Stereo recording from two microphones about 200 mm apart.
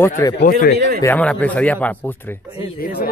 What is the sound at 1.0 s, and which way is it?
Speech, 5° left (ahead or behind).